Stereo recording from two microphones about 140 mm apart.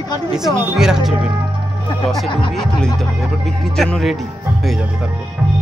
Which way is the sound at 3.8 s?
Centre (ahead or behind).